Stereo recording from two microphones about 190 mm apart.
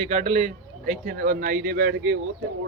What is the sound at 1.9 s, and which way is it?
Speech, 75° right (ahead or behind).